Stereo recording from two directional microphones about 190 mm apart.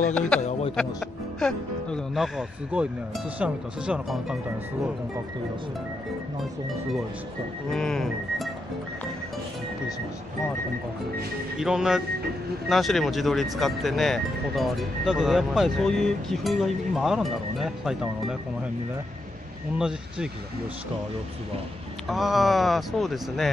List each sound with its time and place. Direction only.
0.4 s speech: 35° left (ahead or behind)
1.4 s speech: centre (ahead or behind)
7.7 s speech: 5° left (ahead or behind)
11.5 s speech: 5° right (ahead or behind)
22.0 s speech: centre (ahead or behind)